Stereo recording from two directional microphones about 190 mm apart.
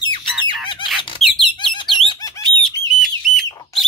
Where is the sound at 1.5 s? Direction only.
25° left (ahead or behind).